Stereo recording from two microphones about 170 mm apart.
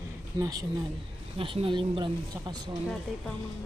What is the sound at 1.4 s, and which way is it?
Speech, 30° right (ahead or behind).